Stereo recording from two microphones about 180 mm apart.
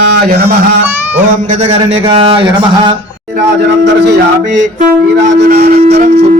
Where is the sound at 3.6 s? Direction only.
75° right (ahead or behind).